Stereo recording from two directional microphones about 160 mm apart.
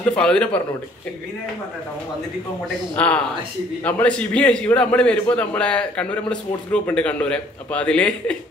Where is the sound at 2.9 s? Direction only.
5° left (ahead or behind).